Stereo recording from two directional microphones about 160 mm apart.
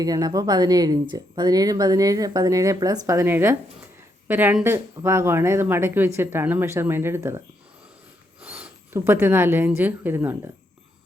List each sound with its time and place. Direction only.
0.0 s speech: 25° right (ahead or behind)